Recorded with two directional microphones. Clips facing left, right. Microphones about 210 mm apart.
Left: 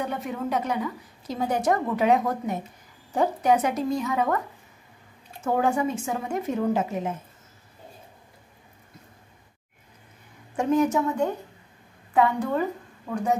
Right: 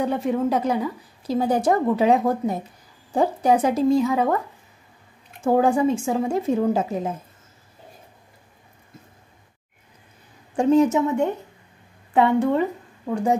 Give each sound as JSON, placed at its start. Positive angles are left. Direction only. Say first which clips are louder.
{"t": 0.2, "sound": "a woman's voice", "louder": "right 7 dB", "side_deg": -30}
{"t": 5.4, "sound": "a woman's voice", "louder": "right 5 dB", "side_deg": -30}
{"t": 10.5, "sound": "a woman's voice", "louder": "right 5 dB", "side_deg": -30}